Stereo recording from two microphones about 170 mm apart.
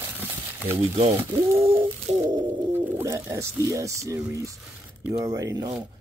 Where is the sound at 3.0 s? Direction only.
15° right (ahead or behind).